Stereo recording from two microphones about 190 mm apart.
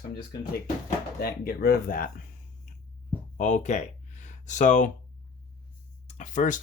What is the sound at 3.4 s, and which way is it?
Speech, 40° left (ahead or behind).